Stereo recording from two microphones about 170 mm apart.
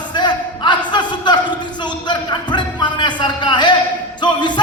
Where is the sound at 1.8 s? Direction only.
25° left (ahead or behind).